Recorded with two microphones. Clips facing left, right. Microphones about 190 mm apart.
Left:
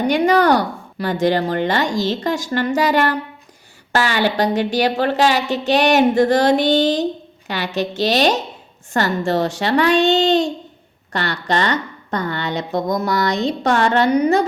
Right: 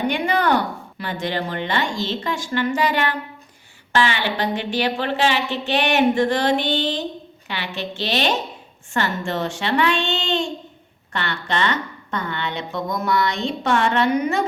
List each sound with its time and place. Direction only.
0.1 s speech: 40° left (ahead or behind)